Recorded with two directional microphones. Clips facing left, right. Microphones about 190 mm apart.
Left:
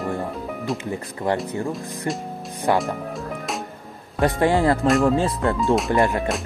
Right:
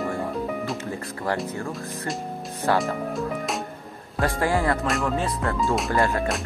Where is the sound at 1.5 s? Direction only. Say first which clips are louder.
Left 4 dB; 15° left (ahead or behind).